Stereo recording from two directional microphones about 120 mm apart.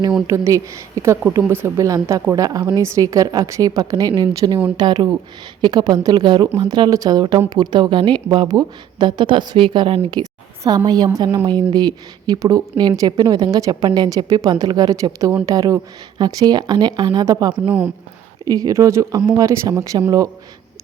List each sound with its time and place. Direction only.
0.3 s a woman's voice: 25° right (ahead or behind); by 10.1 s 50° right (ahead or behind)
10.8 s a woman's voice: 35° right (ahead or behind)